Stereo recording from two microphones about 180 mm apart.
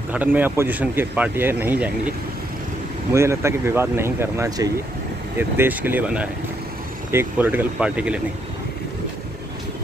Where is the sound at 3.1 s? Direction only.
15° right (ahead or behind).